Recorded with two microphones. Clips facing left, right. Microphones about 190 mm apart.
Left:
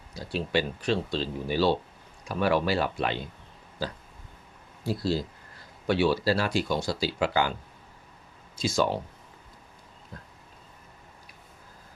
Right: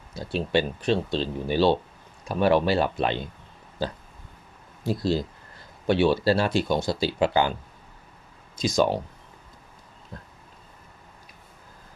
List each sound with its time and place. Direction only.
0.1 s speech: 25° right (ahead or behind)
4.8 s speech: 20° right (ahead or behind)
8.5 s speech: 15° right (ahead or behind)